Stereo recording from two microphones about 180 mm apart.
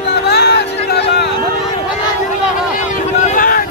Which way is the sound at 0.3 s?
65° left (ahead or behind).